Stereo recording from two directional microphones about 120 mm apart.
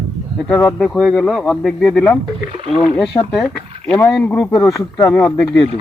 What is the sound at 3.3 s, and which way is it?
Speech, centre (ahead or behind).